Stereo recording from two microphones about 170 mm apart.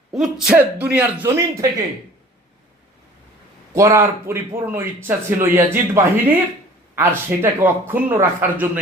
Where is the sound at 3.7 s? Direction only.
15° right (ahead or behind).